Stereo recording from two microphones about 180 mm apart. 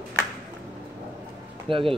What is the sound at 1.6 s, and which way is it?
Speech, 30° right (ahead or behind).